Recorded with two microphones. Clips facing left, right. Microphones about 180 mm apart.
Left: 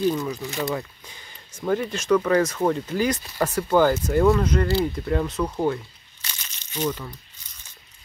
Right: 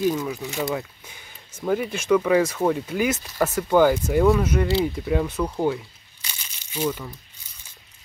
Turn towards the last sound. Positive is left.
turn(degrees=-10)  # may be behind; listen again after turning